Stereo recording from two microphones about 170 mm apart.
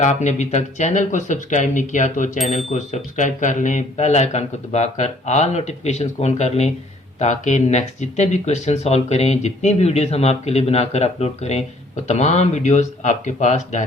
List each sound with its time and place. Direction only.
0.0 s speech: 45° left (ahead or behind)